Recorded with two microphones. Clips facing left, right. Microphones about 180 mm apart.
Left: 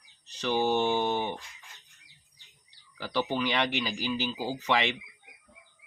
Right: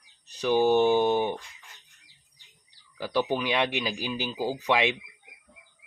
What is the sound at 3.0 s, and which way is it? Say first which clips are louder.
Speech: right 3 dB; 10° right (ahead or behind).